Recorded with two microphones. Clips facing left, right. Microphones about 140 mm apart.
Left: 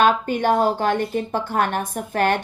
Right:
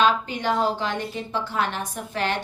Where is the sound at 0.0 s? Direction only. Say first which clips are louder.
Left 4 dB; 50° left (ahead or behind).